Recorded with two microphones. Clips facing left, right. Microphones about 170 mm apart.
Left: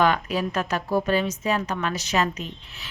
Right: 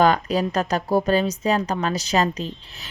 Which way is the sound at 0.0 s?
35° right (ahead or behind).